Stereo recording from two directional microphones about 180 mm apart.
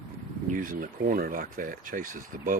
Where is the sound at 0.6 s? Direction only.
50° right (ahead or behind).